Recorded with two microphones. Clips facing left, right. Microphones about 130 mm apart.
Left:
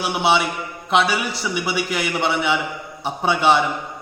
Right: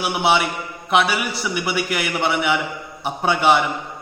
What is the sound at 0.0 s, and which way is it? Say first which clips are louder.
Speech: even; 5° right (ahead or behind).